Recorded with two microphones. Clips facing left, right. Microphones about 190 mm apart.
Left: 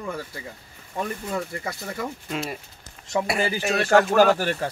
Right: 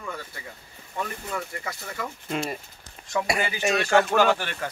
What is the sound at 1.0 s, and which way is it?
Speech, 25° left (ahead or behind).